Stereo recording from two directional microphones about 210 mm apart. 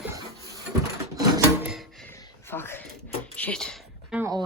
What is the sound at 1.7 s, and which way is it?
Music, centre (ahead or behind).